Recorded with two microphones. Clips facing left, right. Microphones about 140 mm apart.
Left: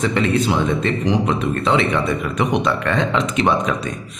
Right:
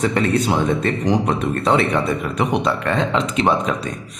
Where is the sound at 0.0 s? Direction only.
40° right (ahead or behind).